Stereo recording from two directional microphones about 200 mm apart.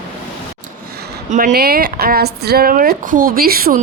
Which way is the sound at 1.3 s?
40° right (ahead or behind).